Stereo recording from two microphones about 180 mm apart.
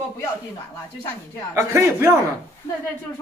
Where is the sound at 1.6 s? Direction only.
15° right (ahead or behind).